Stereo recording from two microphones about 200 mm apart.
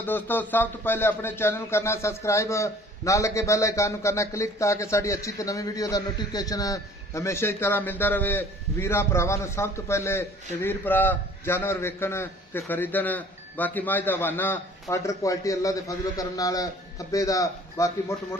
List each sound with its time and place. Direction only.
0.0 s a man's voice: 10° left (ahead or behind)